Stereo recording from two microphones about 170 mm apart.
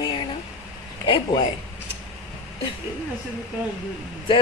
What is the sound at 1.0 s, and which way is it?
Speech, 30° left (ahead or behind).